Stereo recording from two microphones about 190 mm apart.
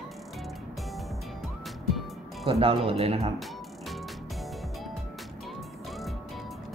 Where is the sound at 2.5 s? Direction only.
30° right (ahead or behind).